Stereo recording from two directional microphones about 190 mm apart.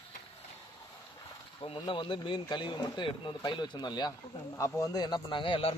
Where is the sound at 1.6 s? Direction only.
25° left (ahead or behind).